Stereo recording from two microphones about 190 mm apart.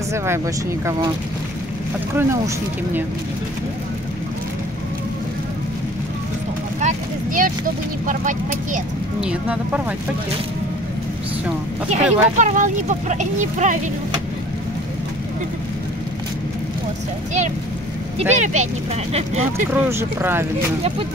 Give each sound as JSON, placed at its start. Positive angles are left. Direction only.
{"t": 0.1, "sound": "speech", "side_deg": -15}
{"t": 2.1, "sound": "speech", "side_deg": -10}
{"t": 6.8, "sound": "vehicle", "side_deg": -40}
{"t": 8.1, "sound": "speech", "side_deg": -40}
{"t": 9.2, "sound": "speech", "side_deg": -5}
{"t": 11.9, "sound": "speech", "side_deg": -40}
{"t": 18.3, "sound": "speech", "side_deg": -40}
{"t": 19.7, "sound": "speech", "side_deg": -10}